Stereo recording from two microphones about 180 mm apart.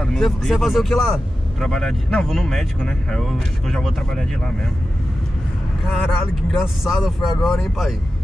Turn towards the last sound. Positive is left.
turn(degrees=0)  # may be behind; listen again after turning